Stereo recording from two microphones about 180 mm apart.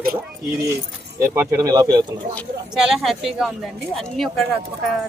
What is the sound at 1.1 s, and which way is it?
Speech, 15° right (ahead or behind).